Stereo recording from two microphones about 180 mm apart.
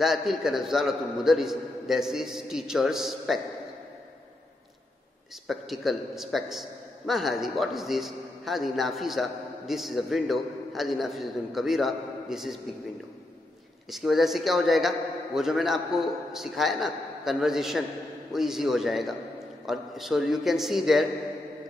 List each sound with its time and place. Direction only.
0.0 s a man's voice: centre (ahead or behind)
5.5 s a man's voice: centre (ahead or behind)
13.8 s a man's voice: centre (ahead or behind)